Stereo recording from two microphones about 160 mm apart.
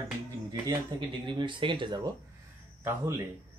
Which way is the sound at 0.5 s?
30° right (ahead or behind).